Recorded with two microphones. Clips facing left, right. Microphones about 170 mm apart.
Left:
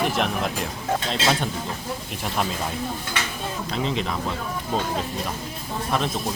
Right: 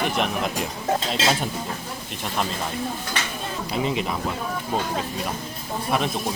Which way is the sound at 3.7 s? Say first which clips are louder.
Right 2 dB; 10° right (ahead or behind).